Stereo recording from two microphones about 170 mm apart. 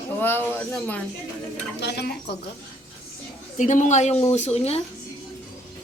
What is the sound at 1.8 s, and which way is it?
Speech, 70° left (ahead or behind).